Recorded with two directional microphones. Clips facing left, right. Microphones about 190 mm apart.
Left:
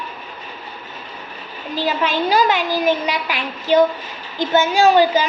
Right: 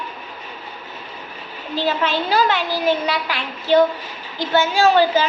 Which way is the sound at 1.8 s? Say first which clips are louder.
Left 1 dB; 15° left (ahead or behind).